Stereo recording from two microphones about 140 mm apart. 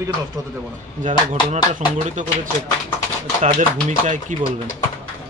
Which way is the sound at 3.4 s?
60° right (ahead or behind).